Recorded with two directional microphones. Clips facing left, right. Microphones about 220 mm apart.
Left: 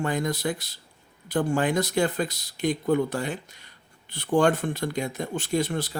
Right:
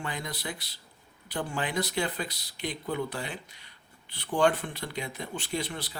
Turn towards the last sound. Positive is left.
turn(degrees=45)  # may be behind; listen again after turning